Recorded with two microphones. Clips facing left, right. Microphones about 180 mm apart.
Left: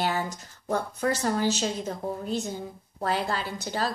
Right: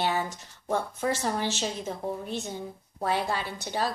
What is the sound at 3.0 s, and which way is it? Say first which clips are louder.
Speech: even; 15° right (ahead or behind).